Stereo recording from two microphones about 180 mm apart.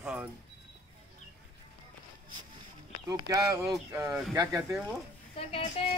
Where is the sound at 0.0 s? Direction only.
10° right (ahead or behind).